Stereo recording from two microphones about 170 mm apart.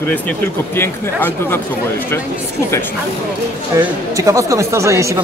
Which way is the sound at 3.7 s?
20° right (ahead or behind).